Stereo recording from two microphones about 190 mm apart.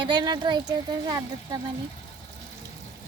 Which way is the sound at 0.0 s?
25° right (ahead or behind).